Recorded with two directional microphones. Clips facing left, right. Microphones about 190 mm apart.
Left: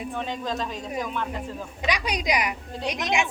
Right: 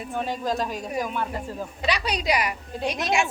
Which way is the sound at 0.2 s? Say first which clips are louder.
Right 5 dB; 10° right (ahead or behind).